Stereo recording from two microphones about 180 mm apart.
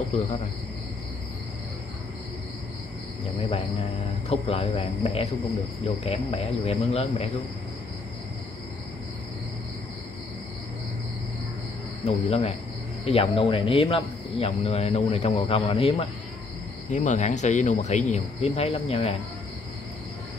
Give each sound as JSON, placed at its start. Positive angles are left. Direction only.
{"t": 4.3, "sound": "a man's voice", "side_deg": 30}
{"t": 12.1, "sound": "a man's voice", "side_deg": 35}